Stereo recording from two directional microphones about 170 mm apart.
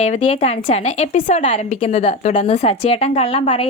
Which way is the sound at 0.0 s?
40° left (ahead or behind).